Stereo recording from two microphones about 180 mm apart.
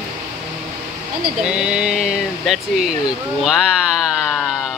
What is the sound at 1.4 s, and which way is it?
Speech, 5° right (ahead or behind).